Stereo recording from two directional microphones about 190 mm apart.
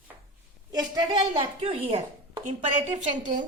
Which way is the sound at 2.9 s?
40° right (ahead or behind).